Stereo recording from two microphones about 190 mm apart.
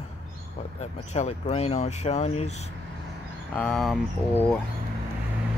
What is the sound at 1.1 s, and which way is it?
Speech, 35° left (ahead or behind).